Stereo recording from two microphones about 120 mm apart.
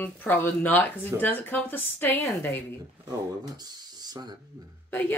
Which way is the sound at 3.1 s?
35° right (ahead or behind).